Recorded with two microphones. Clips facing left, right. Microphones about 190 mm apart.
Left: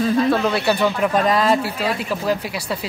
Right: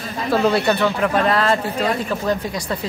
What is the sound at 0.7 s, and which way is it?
A woman's voice, 15° left (ahead or behind).